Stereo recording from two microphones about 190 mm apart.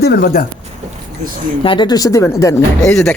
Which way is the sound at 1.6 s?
25° left (ahead or behind).